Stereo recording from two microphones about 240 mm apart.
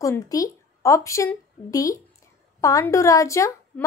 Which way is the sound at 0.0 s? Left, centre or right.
Centre.